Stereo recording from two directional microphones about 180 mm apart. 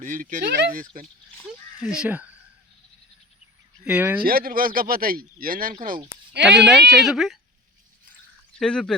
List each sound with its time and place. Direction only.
0.0 s speech: 45° right (ahead or behind)
1.5 s crow: 5° right (ahead or behind)
3.8 s speech: 10° right (ahead or behind)
4.2 s speech: 55° right (ahead or behind)
6.5 s speech: 65° right (ahead or behind)
7.0 s a woman's voice: centre (ahead or behind)
8.5 s speech: 5° left (ahead or behind)